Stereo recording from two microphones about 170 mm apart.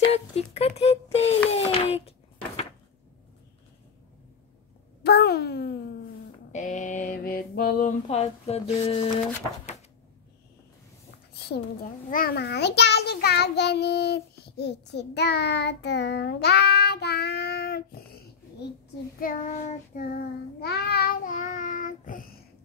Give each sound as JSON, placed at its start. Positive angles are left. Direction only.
{"t": 0.1, "sound": "speech", "side_deg": 35}
{"t": 1.5, "sound": "a sound", "side_deg": 35}
{"t": 5.0, "sound": "a sound", "side_deg": 75}
{"t": 6.5, "sound": "mantra", "side_deg": 45}
{"t": 8.1, "sound": "speech", "side_deg": 35}
{"t": 12.1, "sound": "child singing", "side_deg": 60}
{"t": 19.1, "sound": "child singing", "side_deg": 55}
{"t": 20.6, "sound": "child singing", "side_deg": 70}